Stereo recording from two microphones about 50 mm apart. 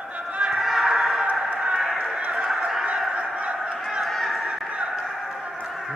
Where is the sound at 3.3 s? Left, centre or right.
Centre.